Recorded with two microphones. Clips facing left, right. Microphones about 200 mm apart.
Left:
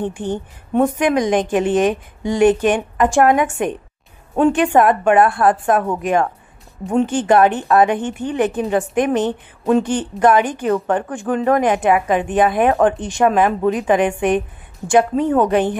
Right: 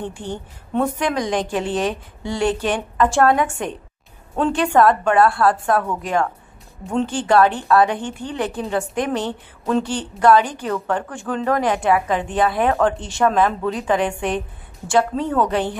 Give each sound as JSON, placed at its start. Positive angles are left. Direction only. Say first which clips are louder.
{"t": 0.0, "sound": "a woman's voice", "louder": "left 6 dB", "side_deg": 20}